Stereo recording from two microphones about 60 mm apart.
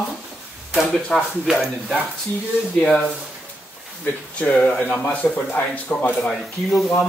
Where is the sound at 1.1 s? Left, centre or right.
Centre.